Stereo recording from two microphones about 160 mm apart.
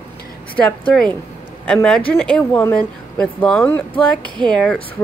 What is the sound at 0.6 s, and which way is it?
Speech, 10° left (ahead or behind).